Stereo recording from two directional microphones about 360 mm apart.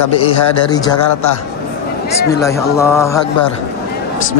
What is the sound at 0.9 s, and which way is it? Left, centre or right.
Speech, left.